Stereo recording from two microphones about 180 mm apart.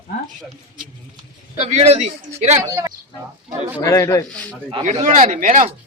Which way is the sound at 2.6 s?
20° right (ahead or behind).